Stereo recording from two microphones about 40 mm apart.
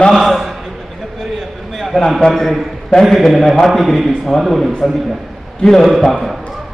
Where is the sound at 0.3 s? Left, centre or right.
Centre.